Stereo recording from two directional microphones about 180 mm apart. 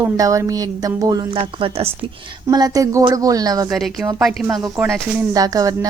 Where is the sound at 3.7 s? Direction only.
Centre (ahead or behind).